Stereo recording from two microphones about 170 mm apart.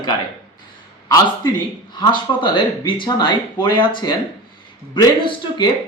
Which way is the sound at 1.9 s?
25° left (ahead or behind).